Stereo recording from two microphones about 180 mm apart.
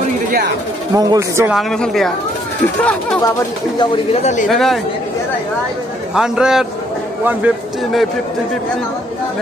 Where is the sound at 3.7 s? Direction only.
30° left (ahead or behind).